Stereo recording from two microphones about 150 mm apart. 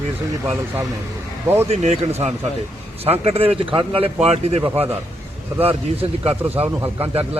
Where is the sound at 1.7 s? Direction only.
45° right (ahead or behind).